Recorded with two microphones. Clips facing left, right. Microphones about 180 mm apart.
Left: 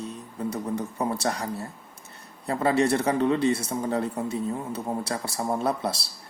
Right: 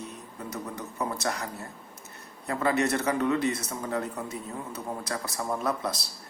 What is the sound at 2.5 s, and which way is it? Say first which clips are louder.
Speech: left 4 dB; 30° left (ahead or behind).